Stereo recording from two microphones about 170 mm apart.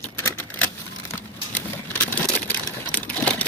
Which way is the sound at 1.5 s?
10° left (ahead or behind).